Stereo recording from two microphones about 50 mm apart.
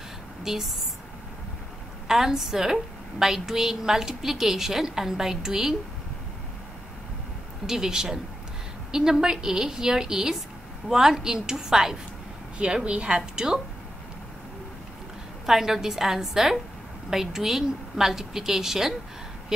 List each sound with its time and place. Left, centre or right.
0.4 s speech: centre
2.0 s a woman's voice: centre
7.6 s a woman's voice: centre
12.5 s a woman's voice: right
15.4 s a woman's voice: centre